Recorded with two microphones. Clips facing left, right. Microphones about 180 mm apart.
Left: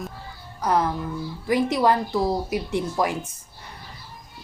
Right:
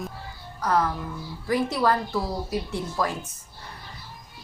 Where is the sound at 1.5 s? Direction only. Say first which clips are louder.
Left 3 dB; 20° left (ahead or behind).